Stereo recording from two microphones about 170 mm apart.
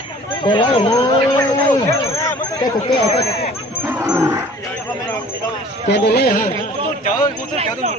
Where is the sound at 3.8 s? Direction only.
15° right (ahead or behind).